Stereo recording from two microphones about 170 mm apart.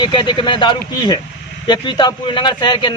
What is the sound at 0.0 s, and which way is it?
A man's voice, 25° left (ahead or behind).